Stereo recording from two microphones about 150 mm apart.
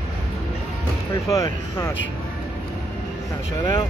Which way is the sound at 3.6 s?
30° left (ahead or behind).